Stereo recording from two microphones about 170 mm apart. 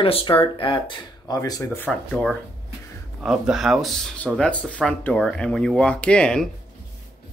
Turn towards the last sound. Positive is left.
turn(degrees=5)  # may be behind; listen again after turning